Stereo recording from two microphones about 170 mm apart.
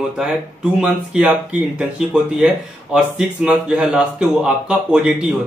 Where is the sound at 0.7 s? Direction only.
5° right (ahead or behind).